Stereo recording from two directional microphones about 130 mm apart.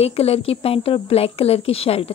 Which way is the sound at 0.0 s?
50° left (ahead or behind).